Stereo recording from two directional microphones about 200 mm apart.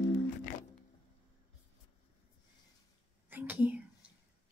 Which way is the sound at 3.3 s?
10° right (ahead or behind).